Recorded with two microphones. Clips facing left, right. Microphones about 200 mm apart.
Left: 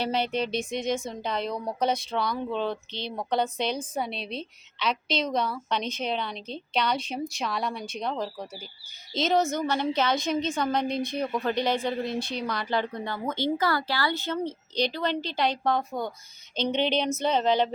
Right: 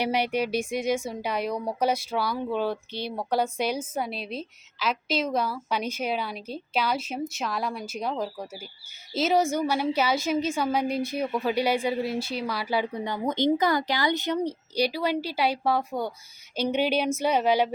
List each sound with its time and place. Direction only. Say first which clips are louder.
0.0 s speech: right 2 dB; 10° right (ahead or behind)